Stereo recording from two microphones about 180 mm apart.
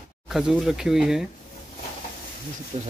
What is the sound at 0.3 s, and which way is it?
Speech, centre (ahead or behind).